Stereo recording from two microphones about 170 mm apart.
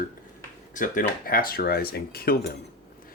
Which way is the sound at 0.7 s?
50° left (ahead or behind).